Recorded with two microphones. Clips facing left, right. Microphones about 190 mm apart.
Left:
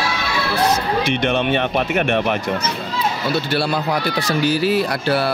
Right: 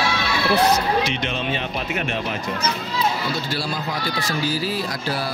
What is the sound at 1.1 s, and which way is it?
Speech, 60° left (ahead or behind).